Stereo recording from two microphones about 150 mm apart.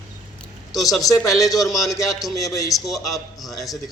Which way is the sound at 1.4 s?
25° left (ahead or behind).